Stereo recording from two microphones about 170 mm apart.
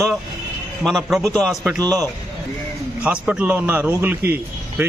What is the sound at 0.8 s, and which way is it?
Speech, centre (ahead or behind).